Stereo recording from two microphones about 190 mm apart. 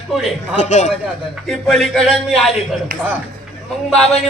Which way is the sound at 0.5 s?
40° left (ahead or behind).